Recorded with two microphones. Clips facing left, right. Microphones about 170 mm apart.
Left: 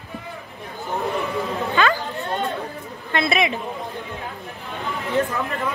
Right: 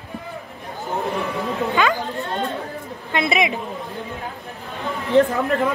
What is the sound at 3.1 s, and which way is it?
Speech, 15° right (ahead or behind).